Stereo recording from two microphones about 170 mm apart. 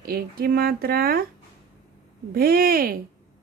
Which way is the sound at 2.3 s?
60° right (ahead or behind).